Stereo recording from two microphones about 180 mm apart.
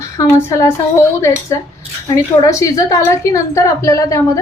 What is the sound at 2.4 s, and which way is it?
Cutlery, 20° left (ahead or behind).